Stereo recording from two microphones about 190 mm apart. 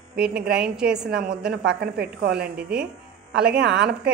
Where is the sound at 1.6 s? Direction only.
60° right (ahead or behind).